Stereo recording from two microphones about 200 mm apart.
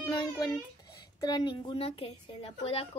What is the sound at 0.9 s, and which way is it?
A woman's voice, 20° left (ahead or behind).